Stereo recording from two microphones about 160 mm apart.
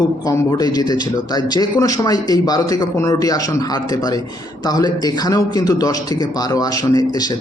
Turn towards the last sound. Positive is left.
turn(degrees=20)  # may be behind; listen again after turning